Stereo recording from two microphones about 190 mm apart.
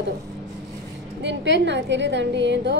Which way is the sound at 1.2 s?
65° right (ahead or behind).